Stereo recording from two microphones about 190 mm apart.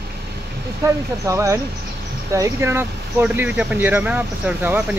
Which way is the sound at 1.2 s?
15° right (ahead or behind).